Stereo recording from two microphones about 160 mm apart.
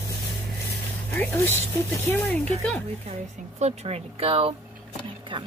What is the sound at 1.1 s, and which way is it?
Speech, 10° left (ahead or behind).